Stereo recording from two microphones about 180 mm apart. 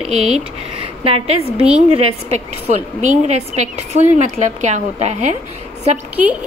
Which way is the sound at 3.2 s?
40° right (ahead or behind).